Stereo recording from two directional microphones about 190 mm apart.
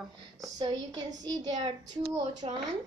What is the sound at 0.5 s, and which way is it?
A child's voice, 20° right (ahead or behind).